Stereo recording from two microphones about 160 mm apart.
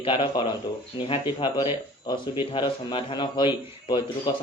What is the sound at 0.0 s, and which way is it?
A man's voice, 30° left (ahead or behind).